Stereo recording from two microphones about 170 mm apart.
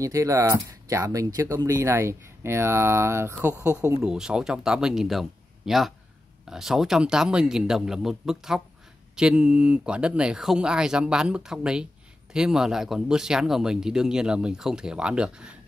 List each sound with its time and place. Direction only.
0.0 s speech: 20° right (ahead or behind)
4.0 s speech: 5° right (ahead or behind)